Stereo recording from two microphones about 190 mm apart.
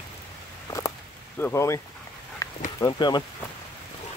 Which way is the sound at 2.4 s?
15° left (ahead or behind).